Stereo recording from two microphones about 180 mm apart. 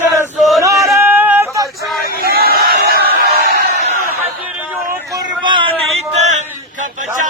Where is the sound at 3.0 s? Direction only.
60° right (ahead or behind).